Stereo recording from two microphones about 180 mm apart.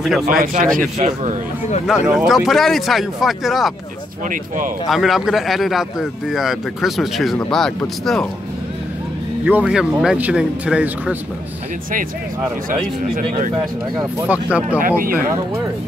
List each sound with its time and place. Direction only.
0.4 s speech: 50° right (ahead or behind)
1.9 s a man's voice: centre (ahead or behind)
4.8 s a man's voice: centre (ahead or behind)
9.4 s speech: 10° right (ahead or behind)
12.6 s speech: 50° right (ahead or behind)
14.2 s speech: 10° right (ahead or behind)
14.8 s speech: 50° right (ahead or behind)